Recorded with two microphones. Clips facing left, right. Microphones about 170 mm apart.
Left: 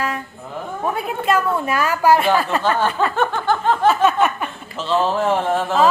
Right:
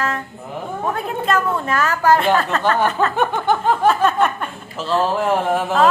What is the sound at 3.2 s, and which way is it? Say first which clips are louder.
Snicker: right 1 dB; 15° right (ahead or behind).